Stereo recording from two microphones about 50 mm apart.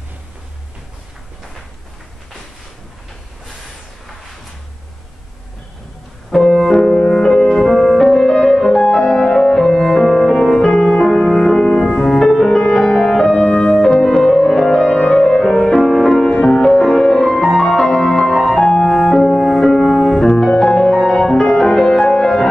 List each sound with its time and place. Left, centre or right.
6.3 s keyboard: centre
6.9 s music: centre
13.5 s music: left
13.7 s music: centre